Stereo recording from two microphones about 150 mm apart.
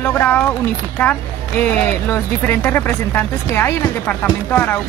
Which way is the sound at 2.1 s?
10° left (ahead or behind).